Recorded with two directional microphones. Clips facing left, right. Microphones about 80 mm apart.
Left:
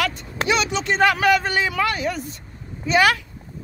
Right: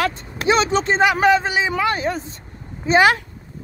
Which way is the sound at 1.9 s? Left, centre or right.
Right.